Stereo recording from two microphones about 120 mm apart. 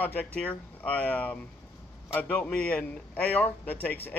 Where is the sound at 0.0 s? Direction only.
10° left (ahead or behind).